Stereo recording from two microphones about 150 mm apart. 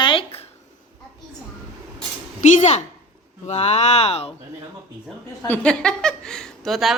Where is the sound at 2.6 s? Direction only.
50° left (ahead or behind).